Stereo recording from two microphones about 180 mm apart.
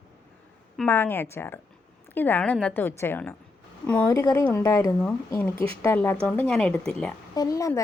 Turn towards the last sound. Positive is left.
turn(degrees=20)  # may be behind; listen again after turning